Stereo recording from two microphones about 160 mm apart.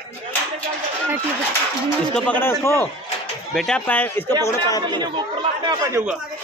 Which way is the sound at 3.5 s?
5° left (ahead or behind).